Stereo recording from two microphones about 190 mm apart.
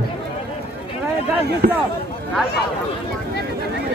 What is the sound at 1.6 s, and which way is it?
Speech, 45° right (ahead or behind).